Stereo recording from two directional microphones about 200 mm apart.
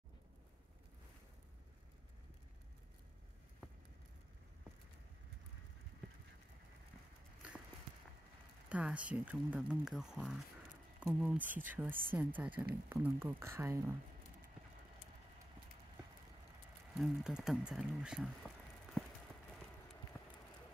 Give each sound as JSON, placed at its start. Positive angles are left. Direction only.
{"t": 8.6, "sound": "speech", "side_deg": -5}
{"t": 16.9, "sound": "speech", "side_deg": -5}